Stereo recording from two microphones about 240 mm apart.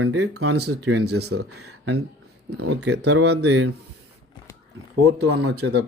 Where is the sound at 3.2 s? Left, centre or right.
Right.